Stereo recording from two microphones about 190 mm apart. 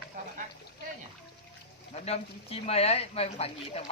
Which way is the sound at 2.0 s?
35° left (ahead or behind).